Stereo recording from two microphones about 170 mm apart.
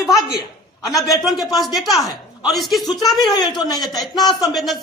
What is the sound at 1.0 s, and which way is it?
Speech, 20° left (ahead or behind).